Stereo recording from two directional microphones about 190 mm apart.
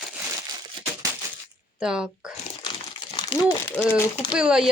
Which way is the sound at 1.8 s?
5° right (ahead or behind).